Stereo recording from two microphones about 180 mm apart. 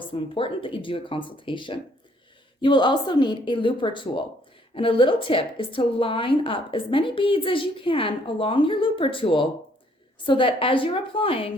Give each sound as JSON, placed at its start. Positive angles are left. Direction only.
{"t": 0.1, "sound": "a woman's voice", "side_deg": 30}